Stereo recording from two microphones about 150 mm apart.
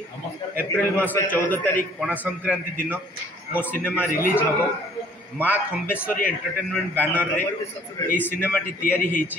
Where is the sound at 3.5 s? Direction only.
15° left (ahead or behind).